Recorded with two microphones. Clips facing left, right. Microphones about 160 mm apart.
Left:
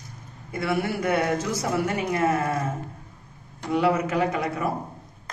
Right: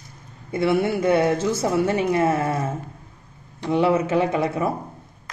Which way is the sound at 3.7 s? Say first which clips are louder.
Right 3 dB; 25° right (ahead or behind).